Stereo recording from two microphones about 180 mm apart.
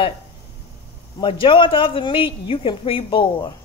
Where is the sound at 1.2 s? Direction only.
30° left (ahead or behind).